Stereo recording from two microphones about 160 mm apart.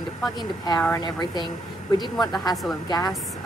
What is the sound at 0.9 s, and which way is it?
Speech, 25° left (ahead or behind).